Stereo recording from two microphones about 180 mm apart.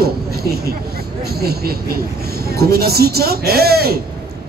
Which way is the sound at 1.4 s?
60° right (ahead or behind).